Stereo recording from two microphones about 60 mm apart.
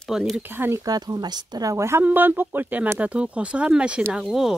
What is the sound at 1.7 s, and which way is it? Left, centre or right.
Speech, right.